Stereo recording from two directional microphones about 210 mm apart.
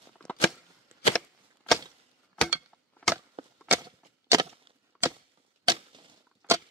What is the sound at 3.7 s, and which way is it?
Wood, 15° right (ahead or behind).